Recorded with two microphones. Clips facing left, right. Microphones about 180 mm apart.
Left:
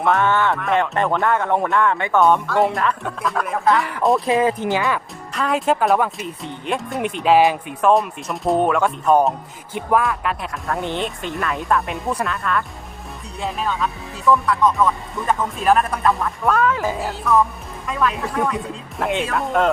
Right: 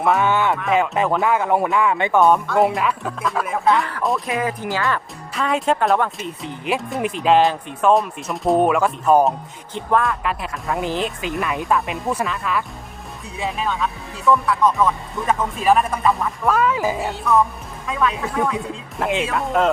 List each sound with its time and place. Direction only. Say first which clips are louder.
0.0 s speech: even; 5° right (ahead or behind)
4.3 s speech: left 5 dB; 25° left (ahead or behind)
5.3 s speech: even; centre (ahead or behind)